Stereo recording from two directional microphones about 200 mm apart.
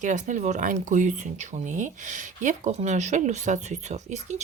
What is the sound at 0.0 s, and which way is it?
Speech, 40° right (ahead or behind).